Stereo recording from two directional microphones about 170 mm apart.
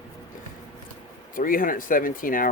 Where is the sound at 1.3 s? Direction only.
55° left (ahead or behind).